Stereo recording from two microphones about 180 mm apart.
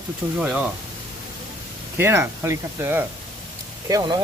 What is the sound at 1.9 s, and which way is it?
Speech, 15° right (ahead or behind).